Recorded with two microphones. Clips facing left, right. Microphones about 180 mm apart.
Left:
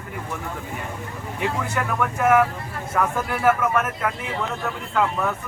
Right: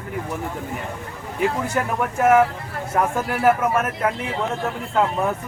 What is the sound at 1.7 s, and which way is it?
Speech, 25° right (ahead or behind).